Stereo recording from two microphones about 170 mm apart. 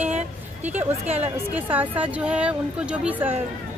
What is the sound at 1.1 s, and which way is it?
Speech, 10° right (ahead or behind).